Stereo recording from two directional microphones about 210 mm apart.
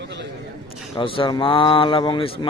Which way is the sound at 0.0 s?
55° right (ahead or behind).